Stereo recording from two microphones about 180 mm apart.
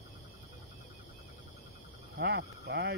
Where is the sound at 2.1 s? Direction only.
65° right (ahead or behind).